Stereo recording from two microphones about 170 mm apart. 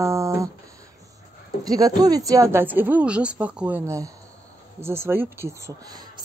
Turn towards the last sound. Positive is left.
turn(degrees=-15)  # may be behind; listen again after turning